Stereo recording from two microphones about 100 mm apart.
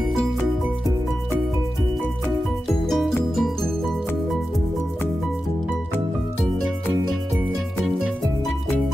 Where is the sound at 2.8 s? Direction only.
5° left (ahead or behind).